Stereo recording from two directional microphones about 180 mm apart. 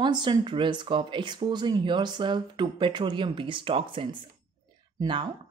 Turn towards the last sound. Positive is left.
turn(degrees=-25)  # may be behind; listen again after turning